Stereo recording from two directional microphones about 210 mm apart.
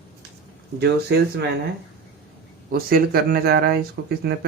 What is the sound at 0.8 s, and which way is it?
Speech, 55° right (ahead or behind).